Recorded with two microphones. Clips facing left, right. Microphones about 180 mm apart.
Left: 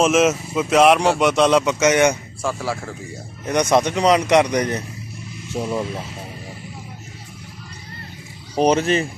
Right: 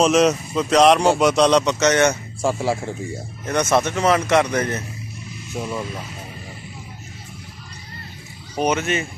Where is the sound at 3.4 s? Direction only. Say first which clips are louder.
Left 2 dB; 15° left (ahead or behind).